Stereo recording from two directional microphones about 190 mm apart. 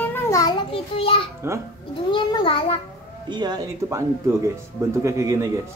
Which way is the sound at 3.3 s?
20° right (ahead or behind).